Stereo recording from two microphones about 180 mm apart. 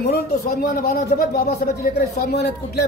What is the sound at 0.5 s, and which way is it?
A woman's voice, 55° left (ahead or behind).